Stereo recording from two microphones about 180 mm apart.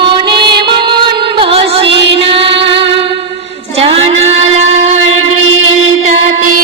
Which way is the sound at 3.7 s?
35° right (ahead or behind).